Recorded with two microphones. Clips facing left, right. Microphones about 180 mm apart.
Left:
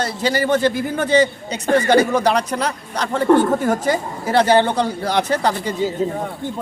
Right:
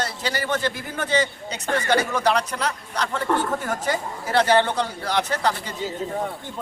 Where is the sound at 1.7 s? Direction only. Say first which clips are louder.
Left 8 dB; 35° left (ahead or behind).